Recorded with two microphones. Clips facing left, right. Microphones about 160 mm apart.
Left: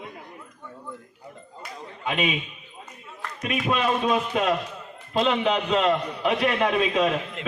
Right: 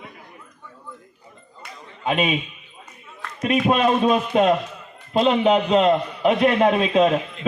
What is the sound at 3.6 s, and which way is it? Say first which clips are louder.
Speech: right 5 dB; 45° right (ahead or behind).